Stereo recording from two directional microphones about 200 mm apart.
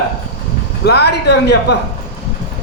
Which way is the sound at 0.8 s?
55° left (ahead or behind).